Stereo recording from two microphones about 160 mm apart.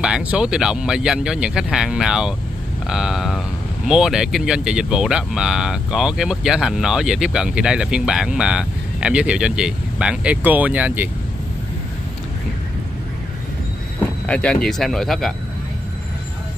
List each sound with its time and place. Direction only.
0.0 s speech: 5° right (ahead or behind)
14.2 s speech: 5° left (ahead or behind)